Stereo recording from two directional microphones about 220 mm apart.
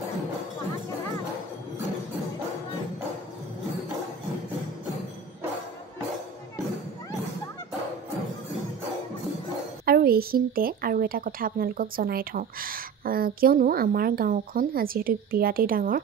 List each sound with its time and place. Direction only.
9.8 s speech: 45° right (ahead or behind)